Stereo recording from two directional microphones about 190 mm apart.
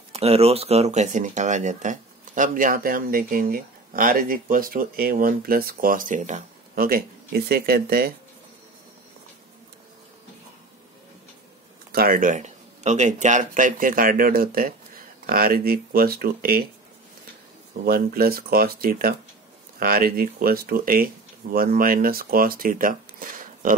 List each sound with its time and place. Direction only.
0.1 s speech: 30° right (ahead or behind); by 8.1 s 55° right (ahead or behind)
11.9 s speech: 50° right (ahead or behind)
17.8 s speech: 50° right (ahead or behind)